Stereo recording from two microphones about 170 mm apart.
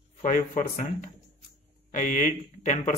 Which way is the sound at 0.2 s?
45° left (ahead or behind).